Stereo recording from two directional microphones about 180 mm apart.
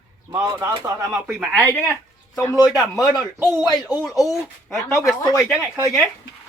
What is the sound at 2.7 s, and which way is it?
A man's voice, centre (ahead or behind).